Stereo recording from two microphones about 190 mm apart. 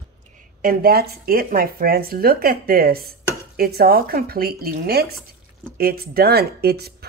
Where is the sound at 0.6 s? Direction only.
50° right (ahead or behind).